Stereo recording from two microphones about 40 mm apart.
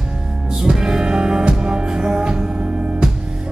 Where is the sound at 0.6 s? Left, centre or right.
Centre.